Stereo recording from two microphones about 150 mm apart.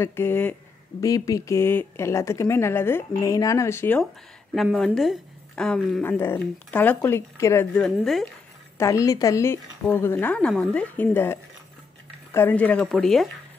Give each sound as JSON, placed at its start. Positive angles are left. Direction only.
{"t": 0.0, "sound": "speech", "side_deg": 15}
{"t": 4.7, "sound": "a woman's voice", "side_deg": 5}
{"t": 7.7, "sound": "speech", "side_deg": 5}
{"t": 8.7, "sound": "speech", "side_deg": 20}